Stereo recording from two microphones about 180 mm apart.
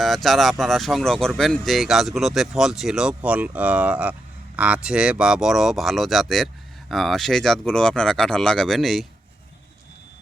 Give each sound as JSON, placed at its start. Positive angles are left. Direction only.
{"t": 0.0, "sound": "speech", "side_deg": 0}